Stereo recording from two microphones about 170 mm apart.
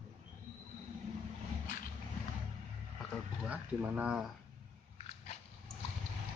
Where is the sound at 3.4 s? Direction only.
10° right (ahead or behind).